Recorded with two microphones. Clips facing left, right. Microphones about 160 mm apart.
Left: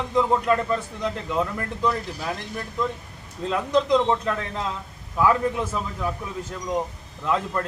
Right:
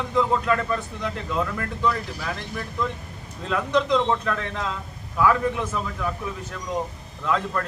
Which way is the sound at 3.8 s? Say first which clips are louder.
Left 1 dB; 15° left (ahead or behind).